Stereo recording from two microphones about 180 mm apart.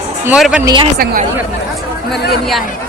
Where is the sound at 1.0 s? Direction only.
50° right (ahead or behind).